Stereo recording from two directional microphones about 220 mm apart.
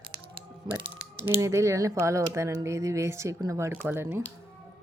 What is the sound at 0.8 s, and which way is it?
Speech, 20° right (ahead or behind).